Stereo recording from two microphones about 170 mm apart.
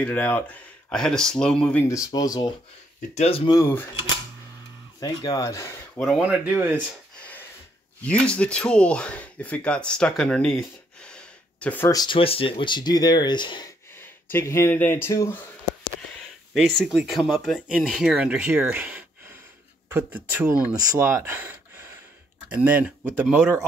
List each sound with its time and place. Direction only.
0.0 s speech: 10° left (ahead or behind)
1.9 s speech: 20° left (ahead or behind)
3.2 s speech: 35° left (ahead or behind)
3.5 s speech: 15° left (ahead or behind)
5.0 s speech: 20° left (ahead or behind)
5.9 s speech: centre (ahead or behind)
7.2 s a sound: 10° left (ahead or behind)
8.0 s speech: 5° left (ahead or behind); by 13.7 s 25° left (ahead or behind)
14.0 s speech: 15° left (ahead or behind)
16.5 s speech: centre (ahead or behind)